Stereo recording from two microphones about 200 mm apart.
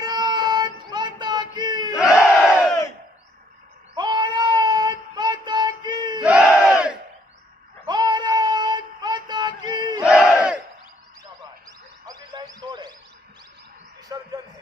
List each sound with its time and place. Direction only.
0.0 s child singing: 20° right (ahead or behind)
2.2 s battle cry: centre (ahead or behind)
3.9 s child singing: 20° right (ahead or behind)
6.2 s battle cry: 5° right (ahead or behind)
7.8 s synthetic singing: 20° right (ahead or behind)
10.0 s battle cry: 5° right (ahead or behind)
12.1 s a sound: 20° right (ahead or behind)
14.0 s a sound: 20° right (ahead or behind)